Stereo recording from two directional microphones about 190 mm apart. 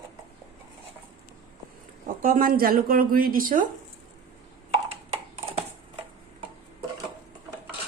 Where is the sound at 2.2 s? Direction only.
45° right (ahead or behind).